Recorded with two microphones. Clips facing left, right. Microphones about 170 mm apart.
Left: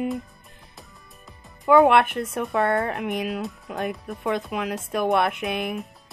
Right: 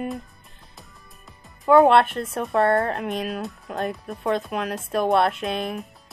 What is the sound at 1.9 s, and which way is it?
Music, 15° left (ahead or behind).